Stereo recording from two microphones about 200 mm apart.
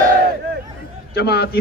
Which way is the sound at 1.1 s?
55° left (ahead or behind).